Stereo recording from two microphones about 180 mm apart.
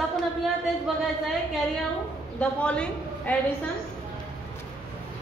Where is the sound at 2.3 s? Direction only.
5° left (ahead or behind).